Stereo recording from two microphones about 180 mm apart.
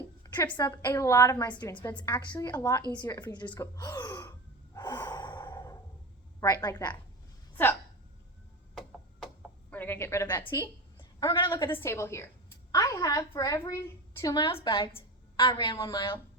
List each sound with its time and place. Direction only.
0.2 s a woman's voice: 20° left (ahead or behind)
2.9 s gasp: 20° left (ahead or behind)
6.4 s a woman's voice: 20° left (ahead or behind)
7.5 s a sound: 10° left (ahead or behind)
9.2 s a sound: 10° left (ahead or behind)
10.4 s a woman's voice: 25° left (ahead or behind)
11.7 s a woman's voice: 15° left (ahead or behind)